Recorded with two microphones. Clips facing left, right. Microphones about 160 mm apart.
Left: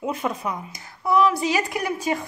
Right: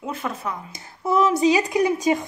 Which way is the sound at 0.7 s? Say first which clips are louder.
Even; 25° right (ahead or behind).